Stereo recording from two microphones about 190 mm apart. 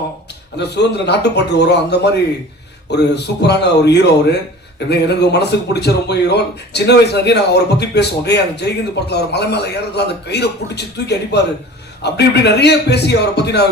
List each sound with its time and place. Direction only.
0.6 s speech: 60° left (ahead or behind)